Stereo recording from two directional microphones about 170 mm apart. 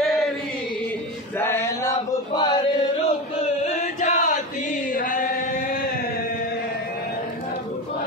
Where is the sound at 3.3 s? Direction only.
35° left (ahead or behind); by 5.7 s 55° left (ahead or behind).